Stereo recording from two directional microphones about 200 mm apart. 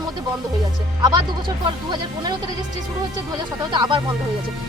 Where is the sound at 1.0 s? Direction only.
20° right (ahead or behind).